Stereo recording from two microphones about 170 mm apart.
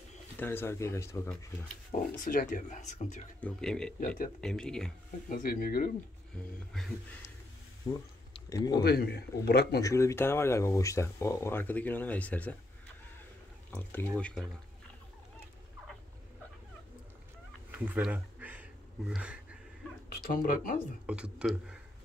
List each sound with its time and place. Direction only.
0.4 s speech: 15° left (ahead or behind)
1.9 s speech: 50° left (ahead or behind)
3.3 s speech: 5° left (ahead or behind)
4.0 s speech: 50° left (ahead or behind)
4.4 s speech: 5° left (ahead or behind)
5.3 s speech: 60° left (ahead or behind)
7.8 s a sound: 25° left (ahead or behind)
8.8 s a man's voice: 70° left (ahead or behind)
9.8 s speech: 20° left (ahead or behind)
17.6 s a sound: 10° right (ahead or behind)
20.4 s speech: 60° left (ahead or behind)
21.1 s speech: 5° right (ahead or behind)